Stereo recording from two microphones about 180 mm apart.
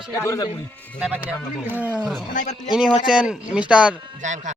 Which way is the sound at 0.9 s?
10° right (ahead or behind).